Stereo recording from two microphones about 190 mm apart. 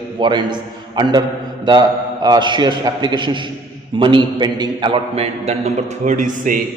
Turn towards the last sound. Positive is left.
turn(degrees=-45)  # may be behind; listen again after turning